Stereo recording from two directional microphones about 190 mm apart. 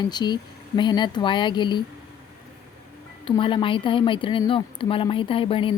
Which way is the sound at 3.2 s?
25° left (ahead or behind).